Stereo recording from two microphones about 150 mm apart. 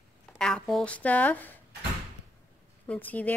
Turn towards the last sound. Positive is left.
turn(degrees=10)  # may be behind; listen again after turning